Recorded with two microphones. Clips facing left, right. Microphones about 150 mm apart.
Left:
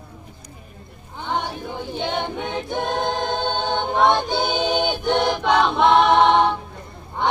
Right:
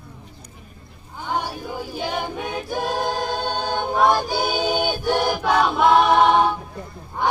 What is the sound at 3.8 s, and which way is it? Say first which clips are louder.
Choir: even; 5° right (ahead or behind).